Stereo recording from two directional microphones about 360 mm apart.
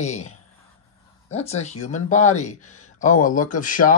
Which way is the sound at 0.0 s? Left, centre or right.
Centre.